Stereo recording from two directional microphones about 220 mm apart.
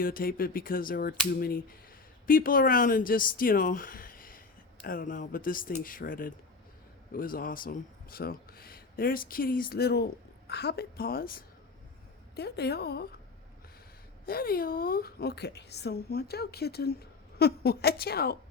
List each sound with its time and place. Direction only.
0.0 s a woman's voice: 40° left (ahead or behind)
14.3 s a woman's voice: 45° left (ahead or behind)